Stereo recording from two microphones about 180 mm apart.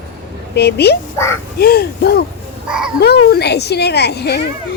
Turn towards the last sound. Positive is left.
turn(degrees=65)  # may be behind; listen again after turning